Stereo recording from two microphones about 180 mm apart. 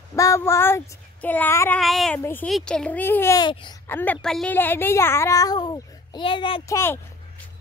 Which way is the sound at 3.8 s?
10° left (ahead or behind).